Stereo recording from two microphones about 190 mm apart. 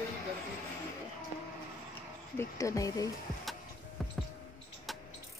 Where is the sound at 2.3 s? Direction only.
15° left (ahead or behind).